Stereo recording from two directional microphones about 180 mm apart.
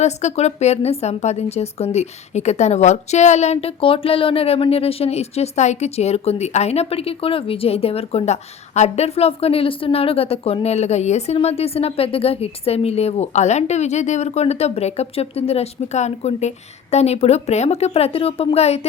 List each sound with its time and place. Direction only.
0.0 s a woman's voice: 40° left (ahead or behind)